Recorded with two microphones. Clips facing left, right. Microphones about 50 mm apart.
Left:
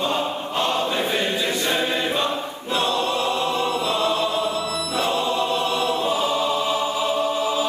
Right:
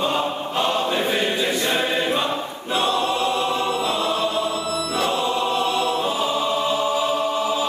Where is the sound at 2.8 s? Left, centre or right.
Right.